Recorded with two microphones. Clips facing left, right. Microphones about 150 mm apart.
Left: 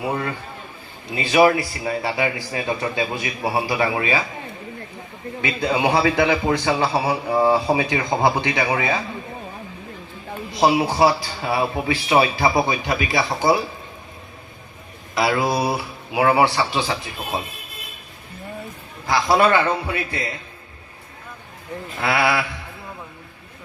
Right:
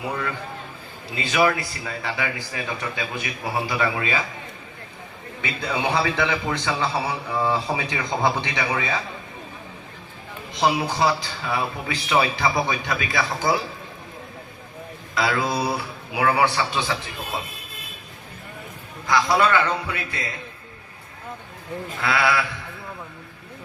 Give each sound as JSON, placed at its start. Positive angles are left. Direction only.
{"t": 0.0, "sound": "a man's voice", "side_deg": 25}
{"t": 5.4, "sound": "a man's voice", "side_deg": 20}
{"t": 8.4, "sound": "a man's voice", "side_deg": 55}
{"t": 10.6, "sound": "a man's voice", "side_deg": 25}
{"t": 15.1, "sound": "a man's voice", "side_deg": 25}
{"t": 19.0, "sound": "a man's voice", "side_deg": 25}
{"t": 22.0, "sound": "a man's voice", "side_deg": 20}